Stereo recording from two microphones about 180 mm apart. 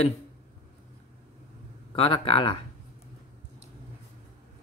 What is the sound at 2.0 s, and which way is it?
Speech, 30° left (ahead or behind).